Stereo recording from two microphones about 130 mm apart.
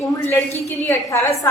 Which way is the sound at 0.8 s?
20° left (ahead or behind).